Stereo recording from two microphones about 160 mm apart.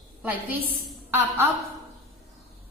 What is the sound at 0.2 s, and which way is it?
A woman's voice, 10° right (ahead or behind).